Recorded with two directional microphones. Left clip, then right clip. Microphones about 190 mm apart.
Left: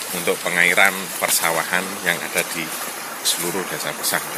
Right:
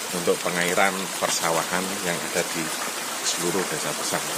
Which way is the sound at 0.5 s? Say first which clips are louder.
Left 6 dB; 10° right (ahead or behind).